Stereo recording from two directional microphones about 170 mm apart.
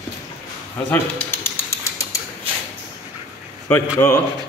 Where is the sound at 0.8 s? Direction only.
15° left (ahead or behind).